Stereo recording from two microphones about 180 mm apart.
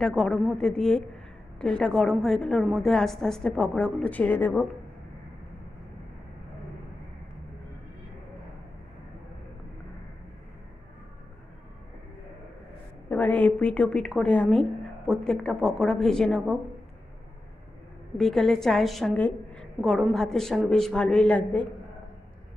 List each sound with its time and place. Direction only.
0.0 s a woman's voice: 5° left (ahead or behind)
13.1 s a woman's voice: 10° left (ahead or behind)
18.1 s a woman's voice: centre (ahead or behind)